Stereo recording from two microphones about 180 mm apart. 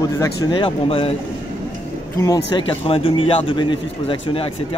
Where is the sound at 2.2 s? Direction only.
20° left (ahead or behind).